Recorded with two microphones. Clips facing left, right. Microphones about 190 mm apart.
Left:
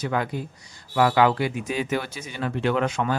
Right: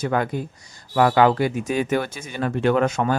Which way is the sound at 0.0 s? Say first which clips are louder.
Right 4 dB; 50° right (ahead or behind).